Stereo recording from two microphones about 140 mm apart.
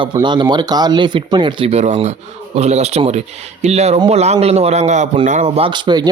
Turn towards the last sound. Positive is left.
turn(degrees=-35)  # may be behind; listen again after turning